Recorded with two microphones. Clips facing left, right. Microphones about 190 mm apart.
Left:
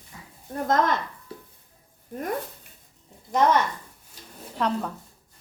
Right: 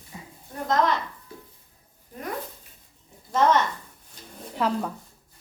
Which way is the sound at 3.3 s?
10° left (ahead or behind).